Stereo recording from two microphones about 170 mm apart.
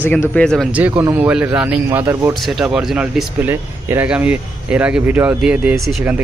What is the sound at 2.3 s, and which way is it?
Speech, centre (ahead or behind).